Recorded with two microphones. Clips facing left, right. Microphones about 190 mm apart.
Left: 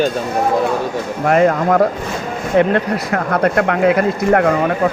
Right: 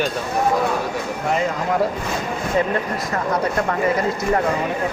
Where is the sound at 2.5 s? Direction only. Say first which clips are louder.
Left 8 dB; 70° left (ahead or behind).